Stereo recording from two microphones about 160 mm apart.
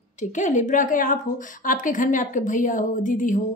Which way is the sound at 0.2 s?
50° left (ahead or behind).